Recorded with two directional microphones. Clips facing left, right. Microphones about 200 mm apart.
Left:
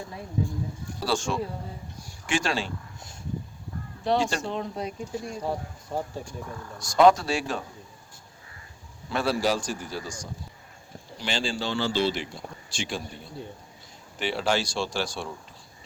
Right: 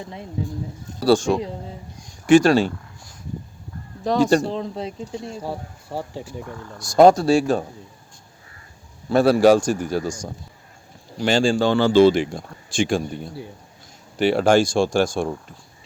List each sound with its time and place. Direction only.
1.0 s speech: 35° right (ahead or behind)
4.0 s speech: 40° right (ahead or behind); by 5.4 s 25° right (ahead or behind)
5.4 s speech: 5° right (ahead or behind)
6.7 s speech: 35° right (ahead or behind)
9.2 s speech: 55° right (ahead or behind)
14.2 s speech: 50° right (ahead or behind)